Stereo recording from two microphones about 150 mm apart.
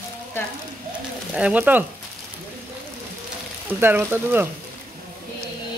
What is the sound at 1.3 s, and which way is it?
Speech, 10° right (ahead or behind).